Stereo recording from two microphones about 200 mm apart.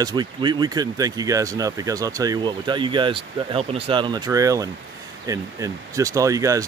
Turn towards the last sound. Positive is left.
turn(degrees=-15)  # may be behind; listen again after turning